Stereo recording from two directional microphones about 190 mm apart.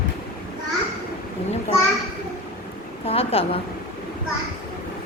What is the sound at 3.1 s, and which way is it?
Speech, 30° left (ahead or behind).